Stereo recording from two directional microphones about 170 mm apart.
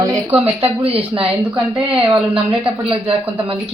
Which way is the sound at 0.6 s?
35° right (ahead or behind).